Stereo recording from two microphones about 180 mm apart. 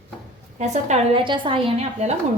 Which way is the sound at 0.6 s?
40° right (ahead or behind).